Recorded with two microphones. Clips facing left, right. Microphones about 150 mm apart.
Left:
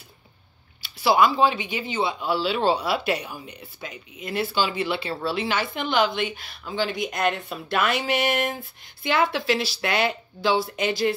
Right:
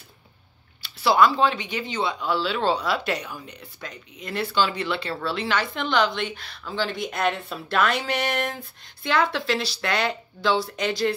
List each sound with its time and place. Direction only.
0.8 s a woman's voice: 5° left (ahead or behind)